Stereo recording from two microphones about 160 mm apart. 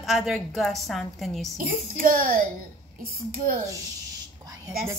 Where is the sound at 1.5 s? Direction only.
60° right (ahead or behind).